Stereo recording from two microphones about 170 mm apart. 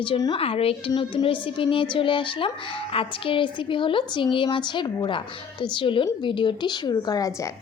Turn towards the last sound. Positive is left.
turn(degrees=20)  # may be behind; listen again after turning